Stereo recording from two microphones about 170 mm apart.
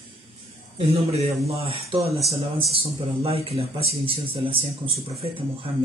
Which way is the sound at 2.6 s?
35° right (ahead or behind).